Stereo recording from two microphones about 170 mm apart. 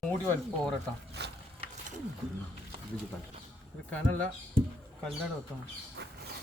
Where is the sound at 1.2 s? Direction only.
75° right (ahead or behind).